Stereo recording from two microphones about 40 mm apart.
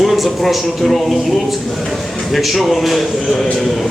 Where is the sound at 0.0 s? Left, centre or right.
Centre.